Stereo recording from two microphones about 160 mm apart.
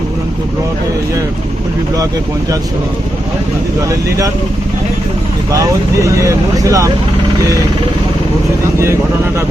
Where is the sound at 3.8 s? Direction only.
20° right (ahead or behind).